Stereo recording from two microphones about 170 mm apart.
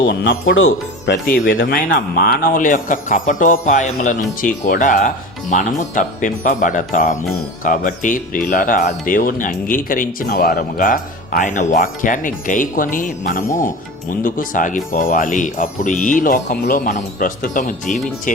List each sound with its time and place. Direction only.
0.0 s speech: 60° left (ahead or behind)